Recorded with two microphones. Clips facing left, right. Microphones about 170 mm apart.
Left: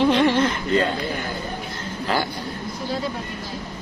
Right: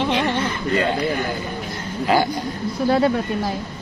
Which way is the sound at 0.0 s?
Centre (ahead or behind).